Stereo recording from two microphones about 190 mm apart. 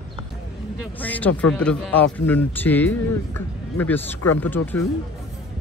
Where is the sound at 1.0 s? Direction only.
10° left (ahead or behind).